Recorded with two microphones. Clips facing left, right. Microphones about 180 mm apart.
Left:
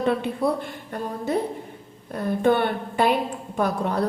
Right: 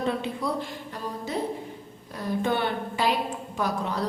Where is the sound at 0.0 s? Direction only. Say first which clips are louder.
Left 5 dB; 60° left (ahead or behind).